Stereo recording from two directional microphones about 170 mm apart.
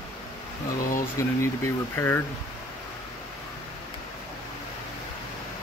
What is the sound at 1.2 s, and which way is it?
Speech, 15° left (ahead or behind).